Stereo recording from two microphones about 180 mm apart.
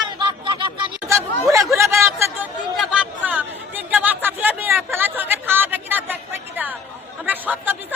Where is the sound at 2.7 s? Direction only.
5° right (ahead or behind).